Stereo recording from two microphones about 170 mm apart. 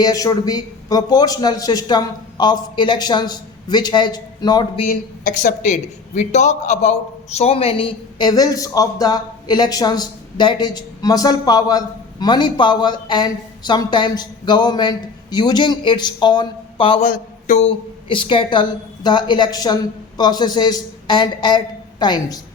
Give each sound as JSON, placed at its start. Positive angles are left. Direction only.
{"t": 0.0, "sound": "a woman's voice", "side_deg": 20}
{"t": 4.9, "sound": "a woman's voice", "side_deg": 50}
{"t": 17.0, "sound": "speech", "side_deg": 50}
{"t": 17.7, "sound": "a woman's voice", "side_deg": 30}